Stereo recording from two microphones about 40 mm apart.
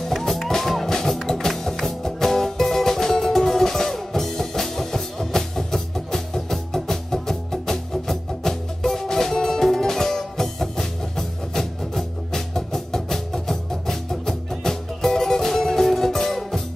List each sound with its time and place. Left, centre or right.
0.5 s music: centre